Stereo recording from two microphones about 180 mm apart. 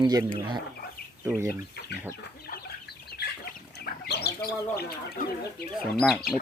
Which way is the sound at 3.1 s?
60° left (ahead or behind).